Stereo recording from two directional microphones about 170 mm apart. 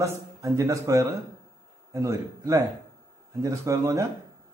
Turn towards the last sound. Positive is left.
turn(degrees=-20)  # may be behind; listen again after turning